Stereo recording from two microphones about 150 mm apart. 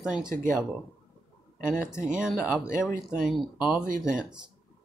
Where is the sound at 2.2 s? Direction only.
5° right (ahead or behind).